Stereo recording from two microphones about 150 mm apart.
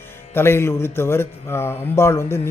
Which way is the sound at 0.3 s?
15° left (ahead or behind).